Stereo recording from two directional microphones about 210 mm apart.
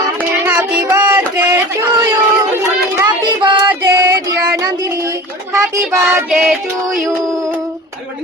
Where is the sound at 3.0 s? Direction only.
20° right (ahead or behind).